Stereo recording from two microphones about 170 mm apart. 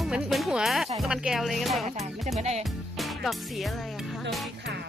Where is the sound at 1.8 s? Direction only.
40° right (ahead or behind).